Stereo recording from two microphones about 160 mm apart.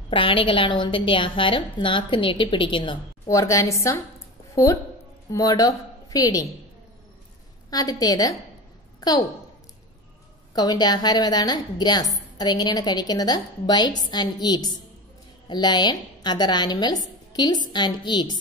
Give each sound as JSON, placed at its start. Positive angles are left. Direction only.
{"t": 0.1, "sound": "a woman's voice", "side_deg": 35}
{"t": 3.3, "sound": "a woman's voice", "side_deg": 20}
{"t": 5.3, "sound": "a woman's voice", "side_deg": 20}
{"t": 7.7, "sound": "a woman's voice", "side_deg": 25}
{"t": 10.5, "sound": "a woman's voice", "side_deg": 25}